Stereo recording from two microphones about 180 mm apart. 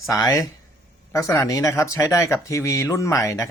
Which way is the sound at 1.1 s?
20° left (ahead or behind).